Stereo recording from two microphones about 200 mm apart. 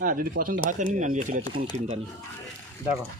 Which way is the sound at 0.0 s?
45° right (ahead or behind).